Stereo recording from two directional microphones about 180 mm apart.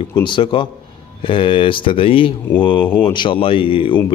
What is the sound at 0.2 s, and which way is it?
Speech, 25° left (ahead or behind).